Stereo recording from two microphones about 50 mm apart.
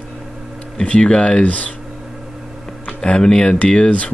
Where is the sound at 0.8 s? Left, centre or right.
Centre.